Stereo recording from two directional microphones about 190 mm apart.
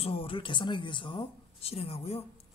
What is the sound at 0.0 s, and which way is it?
Speech, 30° left (ahead or behind).